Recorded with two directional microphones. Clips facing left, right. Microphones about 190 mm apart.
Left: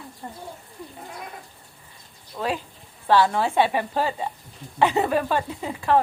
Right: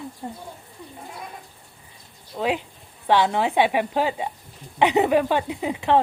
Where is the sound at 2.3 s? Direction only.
15° right (ahead or behind).